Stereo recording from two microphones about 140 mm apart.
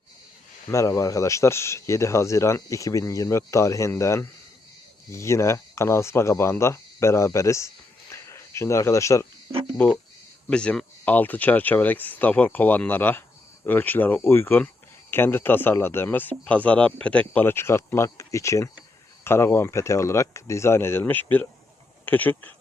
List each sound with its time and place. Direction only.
0.7 s speech: 25° left (ahead or behind)
8.1 s a sound: 20° left (ahead or behind)
9.7 s speech: 10° left (ahead or behind)